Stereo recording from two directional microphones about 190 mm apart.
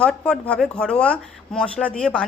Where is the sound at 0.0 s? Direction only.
5° left (ahead or behind).